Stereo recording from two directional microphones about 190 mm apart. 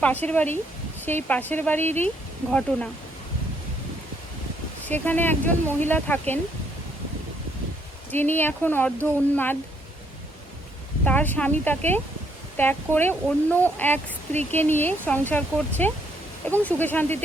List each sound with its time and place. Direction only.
0.0 s speech: 10° left (ahead or behind)
4.9 s speech: 10° left (ahead or behind)
8.1 s speech: 10° left (ahead or behind)
11.0 s speech: 10° left (ahead or behind)